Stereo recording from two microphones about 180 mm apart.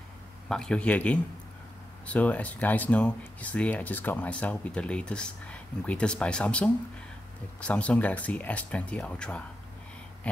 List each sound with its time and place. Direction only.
0.5 s speech: 5° left (ahead or behind)